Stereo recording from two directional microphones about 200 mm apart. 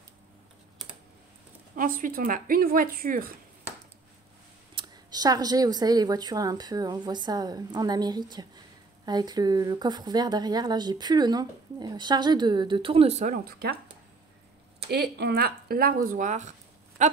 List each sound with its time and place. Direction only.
1.8 s speech: 45° right (ahead or behind)
4.7 s speech: 20° right (ahead or behind); by 13.7 s 50° right (ahead or behind)
14.9 s speech: 55° right (ahead or behind); by 17.1 s 35° right (ahead or behind)